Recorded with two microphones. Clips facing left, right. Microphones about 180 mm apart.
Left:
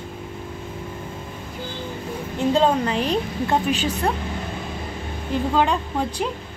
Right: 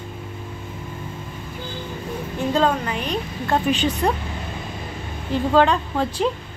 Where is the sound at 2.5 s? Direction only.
25° left (ahead or behind).